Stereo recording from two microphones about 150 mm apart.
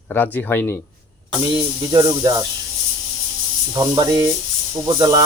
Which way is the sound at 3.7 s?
25° right (ahead or behind).